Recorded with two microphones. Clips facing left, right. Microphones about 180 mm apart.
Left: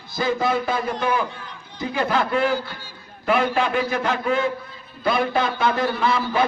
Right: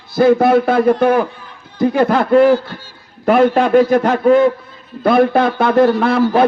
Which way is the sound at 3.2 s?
50° right (ahead or behind).